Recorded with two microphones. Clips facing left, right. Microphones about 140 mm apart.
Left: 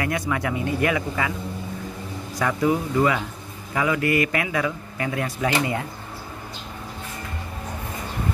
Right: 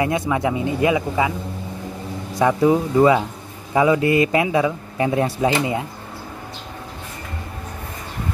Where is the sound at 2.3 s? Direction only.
25° right (ahead or behind).